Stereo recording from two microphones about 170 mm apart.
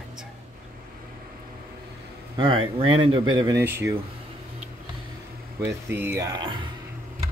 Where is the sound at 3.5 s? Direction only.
15° right (ahead or behind).